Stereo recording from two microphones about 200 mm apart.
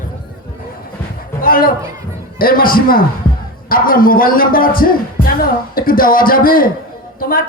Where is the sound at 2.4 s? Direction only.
45° left (ahead or behind).